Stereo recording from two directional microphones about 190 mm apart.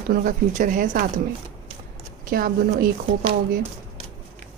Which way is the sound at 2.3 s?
50° right (ahead or behind).